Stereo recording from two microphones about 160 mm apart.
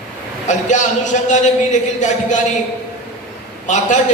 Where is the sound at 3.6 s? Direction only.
50° left (ahead or behind).